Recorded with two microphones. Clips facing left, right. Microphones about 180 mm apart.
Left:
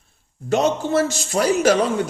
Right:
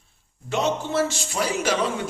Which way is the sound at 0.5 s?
45° left (ahead or behind).